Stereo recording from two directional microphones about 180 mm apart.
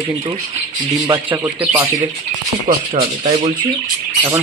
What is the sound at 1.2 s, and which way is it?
Speech, 15° right (ahead or behind).